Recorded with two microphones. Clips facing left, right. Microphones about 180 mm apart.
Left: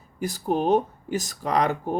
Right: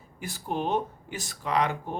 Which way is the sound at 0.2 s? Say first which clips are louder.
Left 7 dB; 40° left (ahead or behind).